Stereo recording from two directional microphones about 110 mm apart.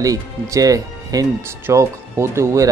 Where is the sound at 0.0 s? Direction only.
30° right (ahead or behind).